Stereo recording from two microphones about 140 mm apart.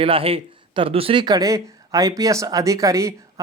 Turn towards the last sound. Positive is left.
turn(degrees=-20)  # may be behind; listen again after turning